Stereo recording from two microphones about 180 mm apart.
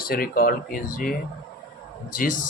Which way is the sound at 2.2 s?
50° left (ahead or behind).